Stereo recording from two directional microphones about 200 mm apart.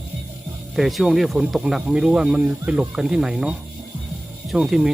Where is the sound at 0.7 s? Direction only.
Centre (ahead or behind).